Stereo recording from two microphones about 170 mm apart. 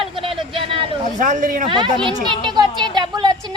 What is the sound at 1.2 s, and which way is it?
Speech, 45° right (ahead or behind).